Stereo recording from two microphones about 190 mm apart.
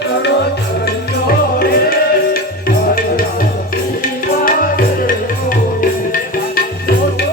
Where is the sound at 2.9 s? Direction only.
50° left (ahead or behind).